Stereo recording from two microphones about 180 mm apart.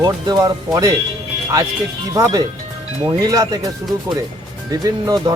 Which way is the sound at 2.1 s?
20° right (ahead or behind).